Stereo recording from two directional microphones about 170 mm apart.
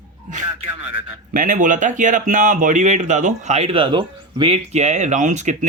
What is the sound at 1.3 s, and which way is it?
Speech, 50° right (ahead or behind).